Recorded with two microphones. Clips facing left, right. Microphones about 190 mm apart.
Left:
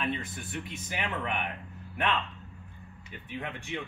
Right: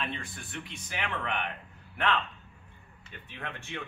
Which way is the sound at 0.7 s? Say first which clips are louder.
Even; 20° left (ahead or behind).